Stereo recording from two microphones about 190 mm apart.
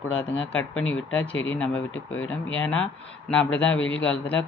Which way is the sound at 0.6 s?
90° left.